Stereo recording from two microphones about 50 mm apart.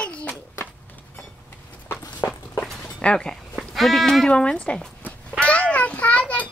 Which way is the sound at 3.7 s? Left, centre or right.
Centre.